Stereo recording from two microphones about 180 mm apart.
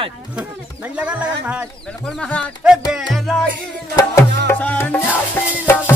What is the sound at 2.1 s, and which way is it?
Speech, 5° left (ahead or behind).